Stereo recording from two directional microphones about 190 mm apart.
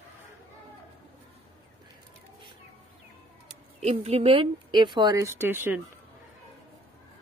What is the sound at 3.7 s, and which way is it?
Speech, 35° right (ahead or behind).